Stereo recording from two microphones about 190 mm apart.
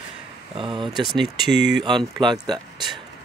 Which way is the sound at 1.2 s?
65° right (ahead or behind).